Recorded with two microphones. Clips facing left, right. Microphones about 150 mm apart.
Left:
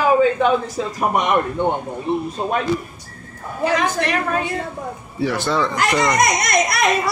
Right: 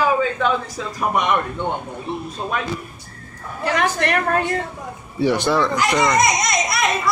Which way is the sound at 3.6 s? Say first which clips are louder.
Left 1 dB; 60° right (ahead or behind).